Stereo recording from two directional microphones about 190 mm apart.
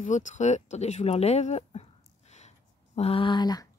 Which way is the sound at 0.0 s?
40° left (ahead or behind).